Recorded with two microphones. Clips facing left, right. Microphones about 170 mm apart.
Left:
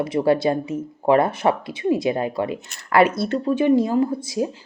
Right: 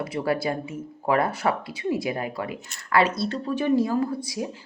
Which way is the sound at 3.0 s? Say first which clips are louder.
Left 5 dB; 50° left (ahead or behind).